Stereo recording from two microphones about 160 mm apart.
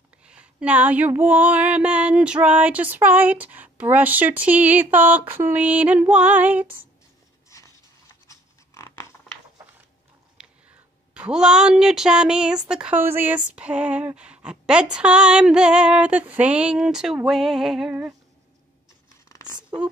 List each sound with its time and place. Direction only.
0.2 s female singing: 5° right (ahead or behind)
7.4 s a sound: 20° left (ahead or behind)
8.3 s scratch: 20° left (ahead or behind)
10.4 s a sound: 5° right (ahead or behind)
11.1 s speech: 5° right (ahead or behind)
12.6 s female singing: 5° right (ahead or behind)